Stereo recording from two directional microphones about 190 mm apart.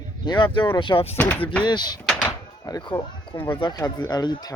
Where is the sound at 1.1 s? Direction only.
10° left (ahead or behind).